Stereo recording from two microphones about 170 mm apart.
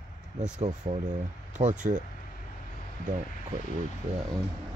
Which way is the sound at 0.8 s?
25° right (ahead or behind).